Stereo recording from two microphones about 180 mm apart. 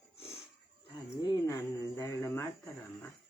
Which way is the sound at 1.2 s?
20° left (ahead or behind).